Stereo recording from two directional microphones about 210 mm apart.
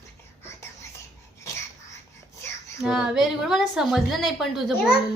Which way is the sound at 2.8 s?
5° right (ahead or behind).